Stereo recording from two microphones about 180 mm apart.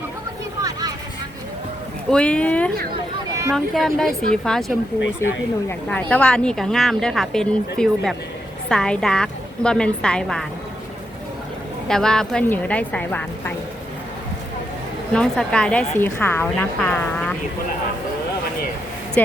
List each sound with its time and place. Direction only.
0.6 s vehicle: 20° right (ahead or behind)
2.0 s a woman's voice: 5° left (ahead or behind)
11.9 s a woman's voice: 5° left (ahead or behind)
15.1 s a woman's voice: 5° left (ahead or behind)
19.2 s speech: 10° left (ahead or behind)